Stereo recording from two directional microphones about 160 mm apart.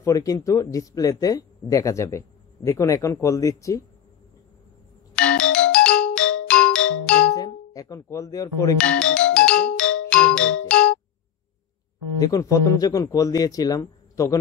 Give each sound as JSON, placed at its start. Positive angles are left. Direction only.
{"t": 0.0, "sound": "speech", "side_deg": 20}
{"t": 5.1, "sound": "music", "side_deg": 5}
{"t": 7.3, "sound": "speech", "side_deg": 25}
{"t": 8.7, "sound": "music", "side_deg": 5}
{"t": 12.2, "sound": "speech", "side_deg": 20}